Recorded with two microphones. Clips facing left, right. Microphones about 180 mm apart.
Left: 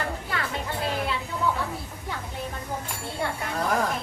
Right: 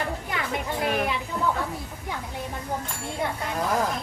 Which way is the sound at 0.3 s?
15° right (ahead or behind).